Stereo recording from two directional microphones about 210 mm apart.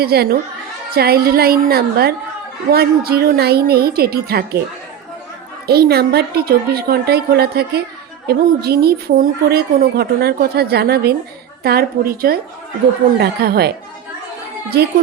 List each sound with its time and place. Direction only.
0.0 s a woman's voice: 50° right (ahead or behind)
5.6 s a woman's voice: 50° right (ahead or behind)